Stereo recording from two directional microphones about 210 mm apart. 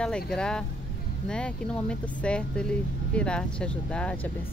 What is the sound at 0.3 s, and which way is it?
Speech, 5° left (ahead or behind).